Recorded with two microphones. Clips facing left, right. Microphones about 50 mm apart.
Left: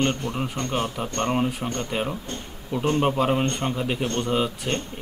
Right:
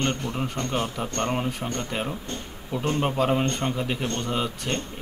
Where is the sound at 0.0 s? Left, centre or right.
Centre.